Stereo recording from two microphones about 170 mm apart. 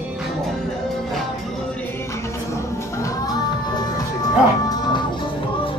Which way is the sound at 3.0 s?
25° left (ahead or behind).